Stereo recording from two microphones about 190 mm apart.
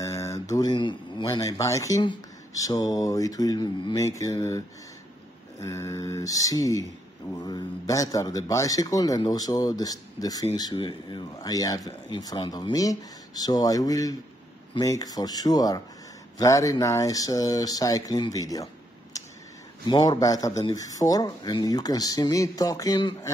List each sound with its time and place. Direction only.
0.0 s a man's voice: 15° left (ahead or behind)
19.1 s a sound: 20° left (ahead or behind)
19.9 s a man's voice: 20° left (ahead or behind)